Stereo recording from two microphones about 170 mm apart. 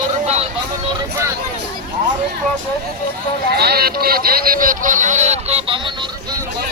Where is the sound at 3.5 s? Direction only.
70° right (ahead or behind); by 6.1 s 30° right (ahead or behind).